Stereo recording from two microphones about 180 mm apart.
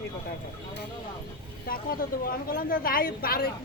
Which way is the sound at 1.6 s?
55° left (ahead or behind).